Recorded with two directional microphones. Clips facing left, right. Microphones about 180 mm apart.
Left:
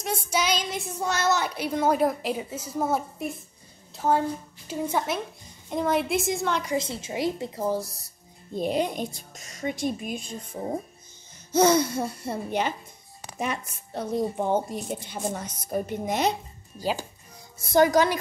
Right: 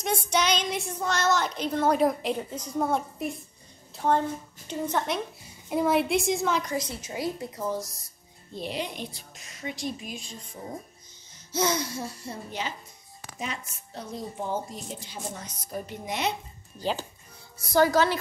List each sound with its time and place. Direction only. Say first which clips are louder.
0.0 s a woman's voice: right 1 dB; 5° left (ahead or behind)
5.7 s speech: right 1 dB; 5° right (ahead or behind)
6.8 s speech: left 4 dB; 25° left (ahead or behind)
7.8 s a woman's voice: left 2 dB; 65° left (ahead or behind)
8.5 s a woman's voice: left 7 dB; 45° left (ahead or behind)
16.7 s speech: left 1 dB; 10° left (ahead or behind)
17.6 s speech: left 2 dB; 20° left (ahead or behind)